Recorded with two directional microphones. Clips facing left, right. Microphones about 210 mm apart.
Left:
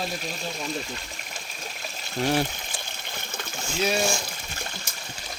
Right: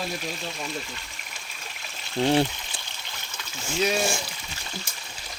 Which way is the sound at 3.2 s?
50° left (ahead or behind).